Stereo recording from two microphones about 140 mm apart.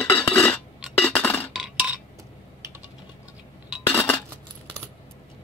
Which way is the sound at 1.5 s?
5° right (ahead or behind).